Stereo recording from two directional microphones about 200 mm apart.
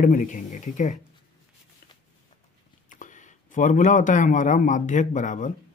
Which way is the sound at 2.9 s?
40° left (ahead or behind).